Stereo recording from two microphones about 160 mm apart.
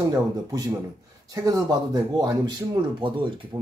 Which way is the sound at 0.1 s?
25° right (ahead or behind).